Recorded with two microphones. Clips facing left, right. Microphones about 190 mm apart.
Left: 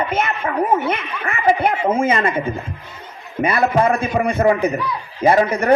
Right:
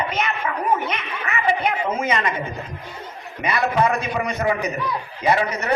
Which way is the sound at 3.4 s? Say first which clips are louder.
Left 4 dB; 50° left (ahead or behind).